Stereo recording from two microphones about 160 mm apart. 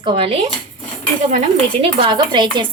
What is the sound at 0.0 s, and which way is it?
Speech, 35° right (ahead or behind).